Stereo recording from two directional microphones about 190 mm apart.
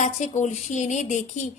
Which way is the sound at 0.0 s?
40° left (ahead or behind).